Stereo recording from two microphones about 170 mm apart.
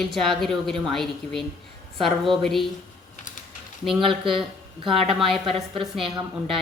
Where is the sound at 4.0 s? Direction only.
30° right (ahead or behind).